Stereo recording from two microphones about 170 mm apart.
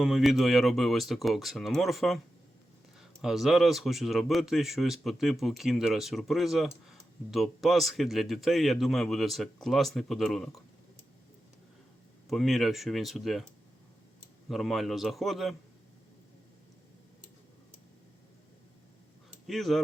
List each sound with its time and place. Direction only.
0.0 s speech: centre (ahead or behind)
12.3 s speech: centre (ahead or behind)
14.4 s speech: centre (ahead or behind)
19.5 s speech: centre (ahead or behind)